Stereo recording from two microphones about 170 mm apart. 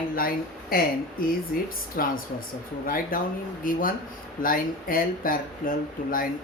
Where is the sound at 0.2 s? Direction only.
60° left (ahead or behind).